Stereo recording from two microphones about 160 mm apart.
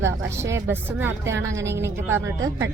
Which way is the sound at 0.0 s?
15° right (ahead or behind).